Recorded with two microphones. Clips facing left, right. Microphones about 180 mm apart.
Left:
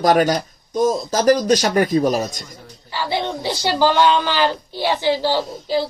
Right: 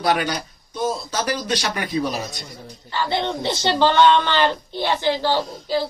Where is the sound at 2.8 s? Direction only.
10° left (ahead or behind).